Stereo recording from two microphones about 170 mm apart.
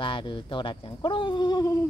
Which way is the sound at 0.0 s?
30° left (ahead or behind).